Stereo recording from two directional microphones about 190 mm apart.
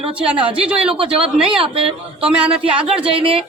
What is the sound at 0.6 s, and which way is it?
Speech, 5° right (ahead or behind).